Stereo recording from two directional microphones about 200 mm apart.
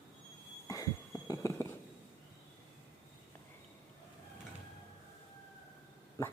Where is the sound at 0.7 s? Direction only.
15° left (ahead or behind).